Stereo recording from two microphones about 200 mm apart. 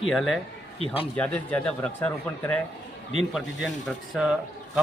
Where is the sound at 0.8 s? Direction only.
30° left (ahead or behind).